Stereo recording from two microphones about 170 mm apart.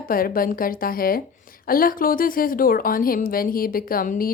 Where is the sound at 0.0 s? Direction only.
55° left (ahead or behind).